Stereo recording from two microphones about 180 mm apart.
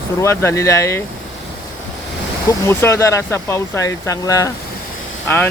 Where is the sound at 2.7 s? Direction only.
15° left (ahead or behind).